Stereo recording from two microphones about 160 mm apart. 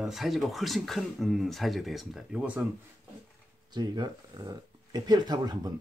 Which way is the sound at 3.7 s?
25° right (ahead or behind).